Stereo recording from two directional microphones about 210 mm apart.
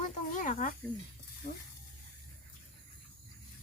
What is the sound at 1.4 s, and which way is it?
Speech, 45° left (ahead or behind).